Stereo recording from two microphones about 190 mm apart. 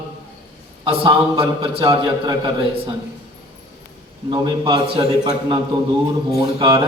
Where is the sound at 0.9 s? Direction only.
25° right (ahead or behind).